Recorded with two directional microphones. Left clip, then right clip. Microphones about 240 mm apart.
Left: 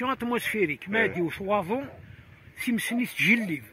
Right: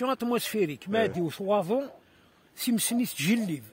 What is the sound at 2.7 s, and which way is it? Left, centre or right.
Speech, right.